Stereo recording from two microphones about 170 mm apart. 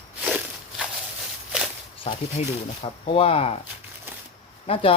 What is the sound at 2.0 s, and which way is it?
Speech, 35° left (ahead or behind).